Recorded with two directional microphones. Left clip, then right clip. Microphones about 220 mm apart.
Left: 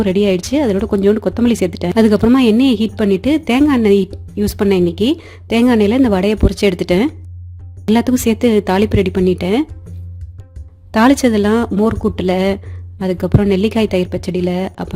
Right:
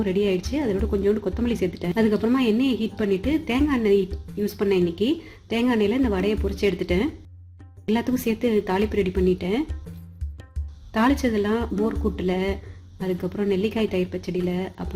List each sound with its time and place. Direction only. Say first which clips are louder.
0.0 s speech: left 8 dB; 50° left (ahead or behind)
10.9 s speech: left 10 dB; 50° left (ahead or behind)